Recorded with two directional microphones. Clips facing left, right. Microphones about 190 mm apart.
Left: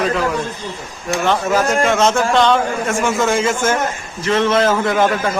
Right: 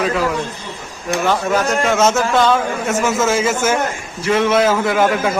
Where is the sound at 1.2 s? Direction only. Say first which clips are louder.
Left 1 dB; centre (ahead or behind).